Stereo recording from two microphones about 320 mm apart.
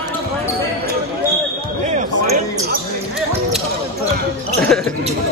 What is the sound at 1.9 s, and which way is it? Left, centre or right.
Basketball bounce, right.